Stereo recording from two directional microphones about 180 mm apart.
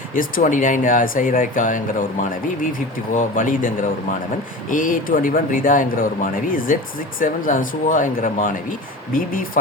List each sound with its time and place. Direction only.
0.1 s speech: 50° left (ahead or behind)
3.2 s speech: 45° left (ahead or behind)
4.7 s speech: 50° left (ahead or behind)
7.2 s speech: 50° left (ahead or behind)